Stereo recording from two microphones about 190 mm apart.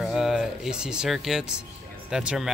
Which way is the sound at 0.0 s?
Centre (ahead or behind).